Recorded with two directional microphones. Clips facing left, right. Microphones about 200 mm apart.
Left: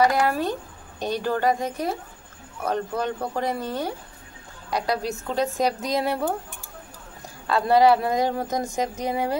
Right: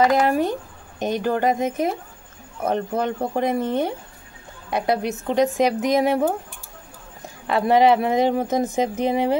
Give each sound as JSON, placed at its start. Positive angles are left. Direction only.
{"t": 0.0, "sound": "speech", "side_deg": -20}
{"t": 7.4, "sound": "speech", "side_deg": -20}